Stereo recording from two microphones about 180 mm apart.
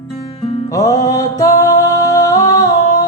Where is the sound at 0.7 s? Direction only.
20° left (ahead or behind).